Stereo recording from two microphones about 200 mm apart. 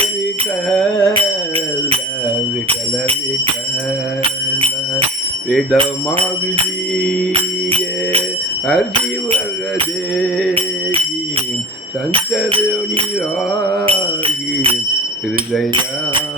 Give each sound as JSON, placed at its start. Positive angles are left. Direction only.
{"t": 0.7, "sound": "music", "side_deg": 5}
{"t": 1.1, "sound": "music", "side_deg": -30}
{"t": 2.6, "sound": "bell", "side_deg": -30}
{"t": 4.2, "sound": "bicycle bell", "side_deg": -30}
{"t": 5.7, "sound": "bell", "side_deg": -30}
{"t": 7.3, "sound": "music", "side_deg": -30}
{"t": 8.6, "sound": "music", "side_deg": 0}
{"t": 10.2, "sound": "music", "side_deg": 0}
{"t": 12.5, "sound": "bell", "side_deg": -25}